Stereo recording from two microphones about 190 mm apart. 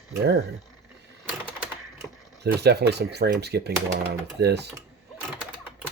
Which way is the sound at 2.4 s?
60° right (ahead or behind).